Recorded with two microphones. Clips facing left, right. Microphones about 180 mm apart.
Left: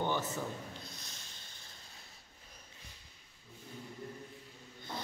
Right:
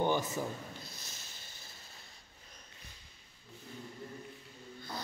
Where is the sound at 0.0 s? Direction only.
10° right (ahead or behind).